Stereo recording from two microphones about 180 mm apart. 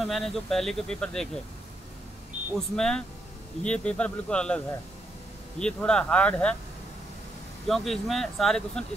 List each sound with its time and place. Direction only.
0.0 s speech: centre (ahead or behind)
2.3 s a sound: 40° right (ahead or behind)
2.7 s speech: 5° left (ahead or behind)
5.6 s speech: 5° left (ahead or behind)
7.6 s speech: centre (ahead or behind)